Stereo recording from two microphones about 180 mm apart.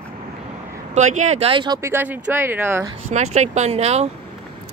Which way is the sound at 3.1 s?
40° right (ahead or behind).